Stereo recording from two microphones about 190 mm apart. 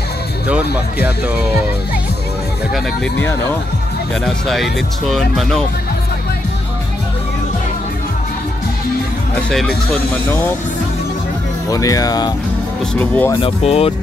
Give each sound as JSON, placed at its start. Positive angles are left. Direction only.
{"t": 3.2, "sound": "speech", "side_deg": 10}
{"t": 4.2, "sound": "speech", "side_deg": 0}
{"t": 11.7, "sound": "speech", "side_deg": 20}
{"t": 12.9, "sound": "speech", "side_deg": 10}
{"t": 13.4, "sound": "speech", "side_deg": 30}